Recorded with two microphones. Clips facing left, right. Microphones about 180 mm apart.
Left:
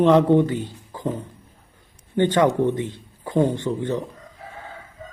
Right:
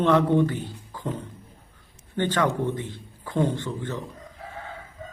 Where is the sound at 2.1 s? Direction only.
20° left (ahead or behind).